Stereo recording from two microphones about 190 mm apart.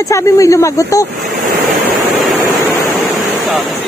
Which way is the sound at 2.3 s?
15° right (ahead or behind).